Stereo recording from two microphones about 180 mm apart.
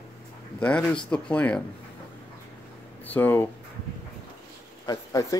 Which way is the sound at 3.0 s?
10° left (ahead or behind).